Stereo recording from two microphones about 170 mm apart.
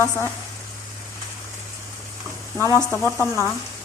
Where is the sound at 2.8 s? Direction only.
15° left (ahead or behind).